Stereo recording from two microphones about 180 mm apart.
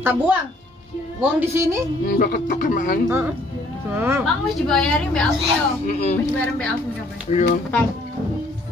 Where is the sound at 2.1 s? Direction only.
50° left (ahead or behind).